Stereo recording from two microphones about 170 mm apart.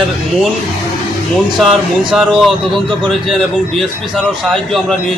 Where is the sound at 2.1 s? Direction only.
Centre (ahead or behind).